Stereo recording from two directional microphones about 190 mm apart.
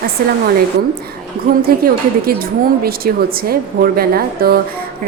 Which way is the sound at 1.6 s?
50° right (ahead or behind).